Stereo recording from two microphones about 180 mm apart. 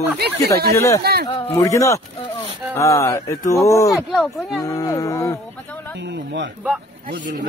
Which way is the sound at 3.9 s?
Centre (ahead or behind).